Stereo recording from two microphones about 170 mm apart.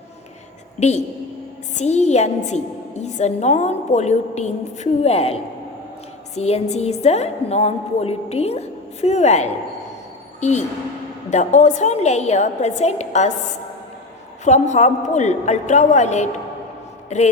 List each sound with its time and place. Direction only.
0.8 s a woman's voice: 40° left (ahead or behind)
14.4 s a woman's voice: 45° left (ahead or behind)